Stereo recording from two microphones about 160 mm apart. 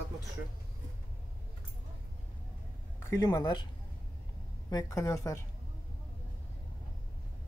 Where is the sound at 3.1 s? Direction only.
20° left (ahead or behind).